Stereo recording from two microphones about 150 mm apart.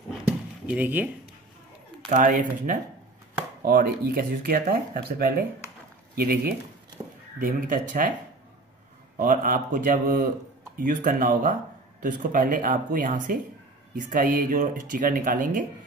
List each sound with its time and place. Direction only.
0.1 s a sound: 10° right (ahead or behind)
2.0 s speech: 55° right (ahead or behind)
3.6 s speech: 85° right
6.1 s speech: 85° right
7.0 s crow: 25° right (ahead or behind)
7.3 s speech: 65° right (ahead or behind)
9.1 s speech: 65° right (ahead or behind)